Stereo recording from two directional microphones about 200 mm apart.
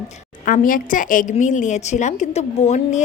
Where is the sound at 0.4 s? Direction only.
45° left (ahead or behind).